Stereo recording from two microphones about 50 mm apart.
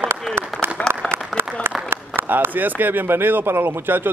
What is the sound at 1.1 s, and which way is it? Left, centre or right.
Applause, right.